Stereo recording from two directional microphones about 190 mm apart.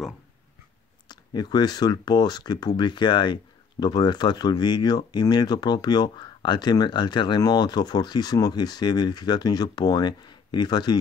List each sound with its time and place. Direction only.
1.0 s speech: 20° left (ahead or behind)